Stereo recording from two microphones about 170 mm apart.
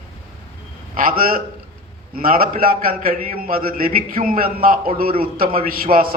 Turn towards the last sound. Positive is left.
turn(degrees=-60)  # may be behind; listen again after turning